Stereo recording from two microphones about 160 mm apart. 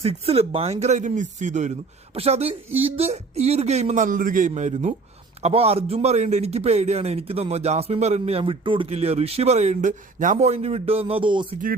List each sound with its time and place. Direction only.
0.0 s a man's voice: 40° right (ahead or behind)